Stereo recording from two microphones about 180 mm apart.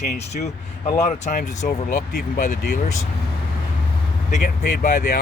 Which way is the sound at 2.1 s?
55° left (ahead or behind).